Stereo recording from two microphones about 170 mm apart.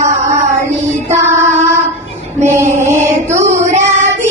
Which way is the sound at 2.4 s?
15° right (ahead or behind).